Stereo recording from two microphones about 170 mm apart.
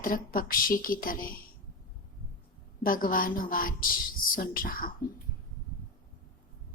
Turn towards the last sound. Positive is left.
turn(degrees=55)  # may be behind; listen again after turning